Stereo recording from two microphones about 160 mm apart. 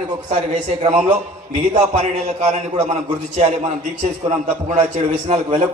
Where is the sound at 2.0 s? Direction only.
45° right (ahead or behind).